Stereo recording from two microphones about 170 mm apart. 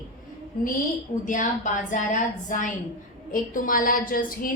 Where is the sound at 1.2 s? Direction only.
50° left (ahead or behind).